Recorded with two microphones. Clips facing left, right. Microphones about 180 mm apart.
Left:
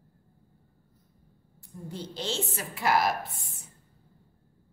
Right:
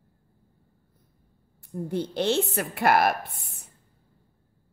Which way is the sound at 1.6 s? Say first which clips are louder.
Right 10 dB; 60° right (ahead or behind).